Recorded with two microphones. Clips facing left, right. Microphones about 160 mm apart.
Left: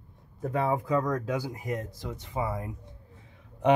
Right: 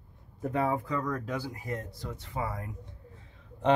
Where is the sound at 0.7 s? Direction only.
15° left (ahead or behind).